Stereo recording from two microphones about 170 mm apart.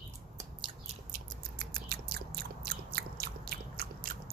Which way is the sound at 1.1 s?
60° right (ahead or behind).